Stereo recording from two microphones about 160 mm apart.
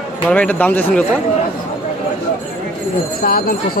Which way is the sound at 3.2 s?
65° left (ahead or behind).